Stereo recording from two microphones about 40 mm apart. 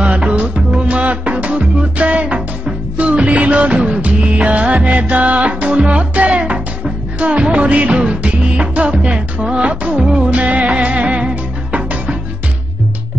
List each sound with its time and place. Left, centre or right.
0.0 s music: right
3.0 s music of bollywood: right
4.8 s music: right